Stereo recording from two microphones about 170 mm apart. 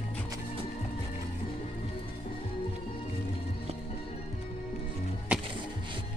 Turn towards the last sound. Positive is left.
turn(degrees=-5)  # may be behind; listen again after turning